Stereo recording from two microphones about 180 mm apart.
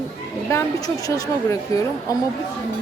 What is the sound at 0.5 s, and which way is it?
A woman's voice, 15° left (ahead or behind).